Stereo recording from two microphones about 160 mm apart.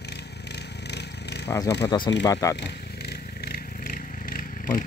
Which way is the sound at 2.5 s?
90° left.